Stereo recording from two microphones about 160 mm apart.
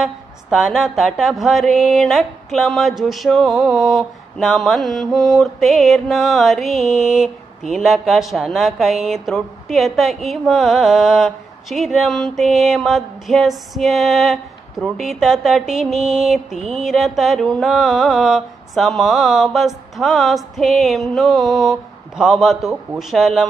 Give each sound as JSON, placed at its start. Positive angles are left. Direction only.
{"t": 0.0, "sound": "a woman's voice", "side_deg": 0}
{"t": 16.5, "sound": "a sound", "side_deg": -40}
{"t": 16.8, "sound": "a woman's voice", "side_deg": 0}